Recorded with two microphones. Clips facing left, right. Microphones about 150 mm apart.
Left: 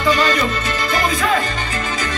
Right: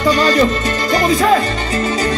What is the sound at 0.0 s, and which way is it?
Music, 40° right (ahead or behind).